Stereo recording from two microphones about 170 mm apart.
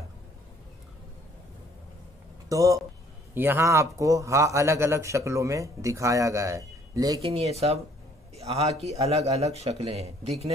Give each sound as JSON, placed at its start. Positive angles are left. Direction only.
{"t": 2.5, "sound": "a man's voice", "side_deg": -20}
{"t": 7.2, "sound": "a man's voice", "side_deg": -35}